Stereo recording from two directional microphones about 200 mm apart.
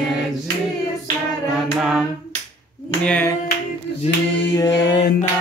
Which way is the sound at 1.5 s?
Centre (ahead or behind).